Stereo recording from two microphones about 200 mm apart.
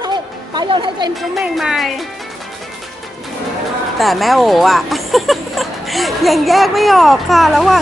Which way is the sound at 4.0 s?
Centre (ahead or behind).